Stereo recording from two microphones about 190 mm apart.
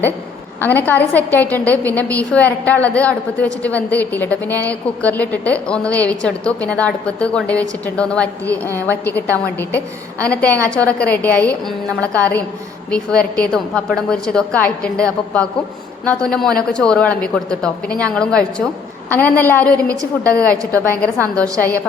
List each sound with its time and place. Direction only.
0.6 s a woman's voice: 10° left (ahead or behind)